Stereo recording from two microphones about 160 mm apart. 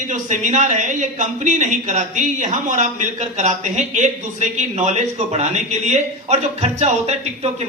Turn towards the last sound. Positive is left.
turn(degrees=-40)  # may be behind; listen again after turning